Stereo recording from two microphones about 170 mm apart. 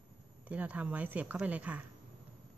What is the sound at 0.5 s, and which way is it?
Speech, 10° right (ahead or behind).